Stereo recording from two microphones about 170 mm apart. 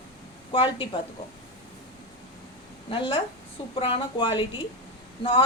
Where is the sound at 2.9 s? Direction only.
30° left (ahead or behind).